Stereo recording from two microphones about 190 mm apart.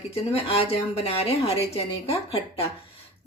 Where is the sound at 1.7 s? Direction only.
30° left (ahead or behind).